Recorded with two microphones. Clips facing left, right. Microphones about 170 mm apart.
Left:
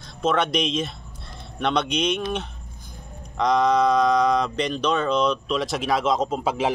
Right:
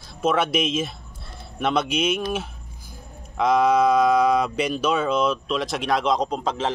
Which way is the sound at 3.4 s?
5° right (ahead or behind).